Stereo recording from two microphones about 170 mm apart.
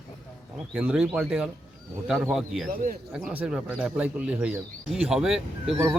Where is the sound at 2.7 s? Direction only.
55° right (ahead or behind).